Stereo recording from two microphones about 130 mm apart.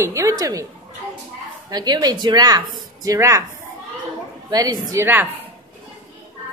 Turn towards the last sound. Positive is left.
turn(degrees=-15)  # may be behind; listen again after turning